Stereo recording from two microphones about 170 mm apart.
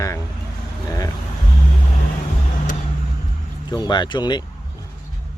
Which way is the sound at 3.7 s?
25° left (ahead or behind).